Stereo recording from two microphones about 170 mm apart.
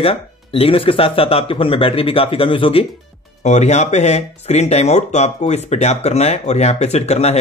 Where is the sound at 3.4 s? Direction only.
40° left (ahead or behind).